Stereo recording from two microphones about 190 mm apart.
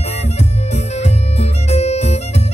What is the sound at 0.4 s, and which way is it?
Music, 35° left (ahead or behind).